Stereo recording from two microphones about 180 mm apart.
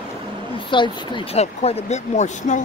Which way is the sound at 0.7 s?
25° left (ahead or behind).